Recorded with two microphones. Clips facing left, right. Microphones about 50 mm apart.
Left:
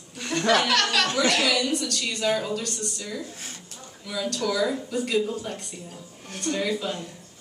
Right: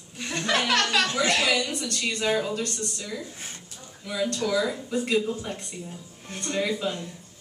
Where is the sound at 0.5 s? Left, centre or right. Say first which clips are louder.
Left 1 dB; right.